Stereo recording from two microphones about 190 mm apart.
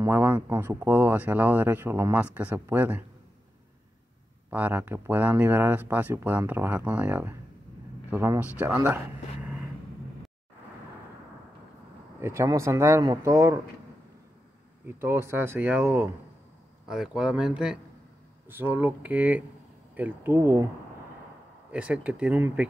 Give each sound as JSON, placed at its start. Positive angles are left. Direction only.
{"t": 0.0, "sound": "speech", "side_deg": -10}
{"t": 4.5, "sound": "speech", "side_deg": -10}
{"t": 12.2, "sound": "speech", "side_deg": -15}
{"t": 14.9, "sound": "speech", "side_deg": -15}
{"t": 16.8, "sound": "speech", "side_deg": -5}
{"t": 21.7, "sound": "speech", "side_deg": -5}